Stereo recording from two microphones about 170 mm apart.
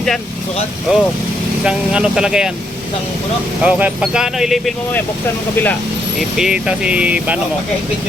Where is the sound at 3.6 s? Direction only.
5° right (ahead or behind).